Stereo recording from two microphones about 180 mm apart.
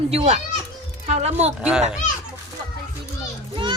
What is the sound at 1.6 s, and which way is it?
Speech, 5° right (ahead or behind).